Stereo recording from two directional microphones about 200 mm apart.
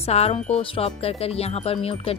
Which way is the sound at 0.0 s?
30° left (ahead or behind).